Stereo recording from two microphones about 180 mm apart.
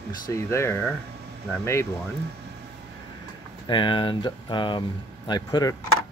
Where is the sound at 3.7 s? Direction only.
25° left (ahead or behind).